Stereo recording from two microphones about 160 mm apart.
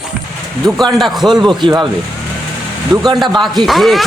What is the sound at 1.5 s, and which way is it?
Speech, 30° right (ahead or behind).